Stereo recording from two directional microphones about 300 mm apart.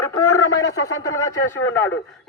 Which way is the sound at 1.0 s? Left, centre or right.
Centre.